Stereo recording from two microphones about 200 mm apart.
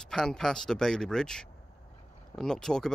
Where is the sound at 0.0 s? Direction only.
5° left (ahead or behind).